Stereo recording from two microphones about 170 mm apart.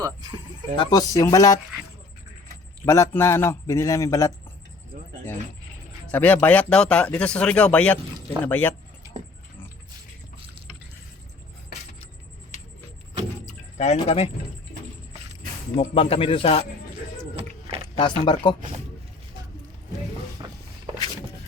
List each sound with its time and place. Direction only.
0.0 s speech: 25° right (ahead or behind)
0.8 s speech: 20° left (ahead or behind)
2.8 s speech: 15° left (ahead or behind)
6.1 s speech: 10° left (ahead or behind)
13.7 s a man's voice: 40° left (ahead or behind)
15.7 s a man's voice: 35° left (ahead or behind)
18.0 s speech: 25° left (ahead or behind)
20.4 s walk: 25° right (ahead or behind)